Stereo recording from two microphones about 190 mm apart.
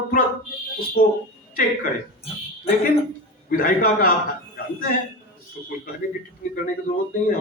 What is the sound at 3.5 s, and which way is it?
Speech, 45° left (ahead or behind).